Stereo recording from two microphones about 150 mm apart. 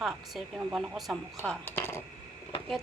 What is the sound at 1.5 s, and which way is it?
Speech, 15° left (ahead or behind).